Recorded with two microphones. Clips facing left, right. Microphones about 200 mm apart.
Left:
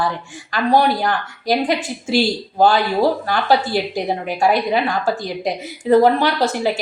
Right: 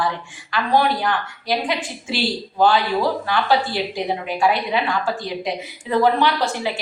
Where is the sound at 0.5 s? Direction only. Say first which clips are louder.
Left 3 dB; 40° left (ahead or behind).